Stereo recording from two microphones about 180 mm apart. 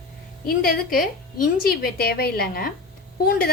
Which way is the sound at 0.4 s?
55° left (ahead or behind).